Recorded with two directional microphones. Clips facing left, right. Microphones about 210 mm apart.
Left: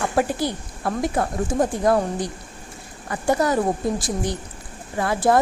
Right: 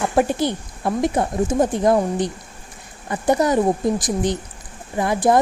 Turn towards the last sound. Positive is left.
turn(degrees=-20)  # may be behind; listen again after turning